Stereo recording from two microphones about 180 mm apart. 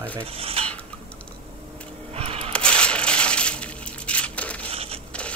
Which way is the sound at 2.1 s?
35° right (ahead or behind).